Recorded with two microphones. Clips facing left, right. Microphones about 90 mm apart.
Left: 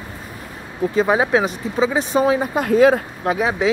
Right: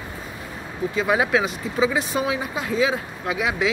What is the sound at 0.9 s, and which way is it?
Speech, 35° left (ahead or behind).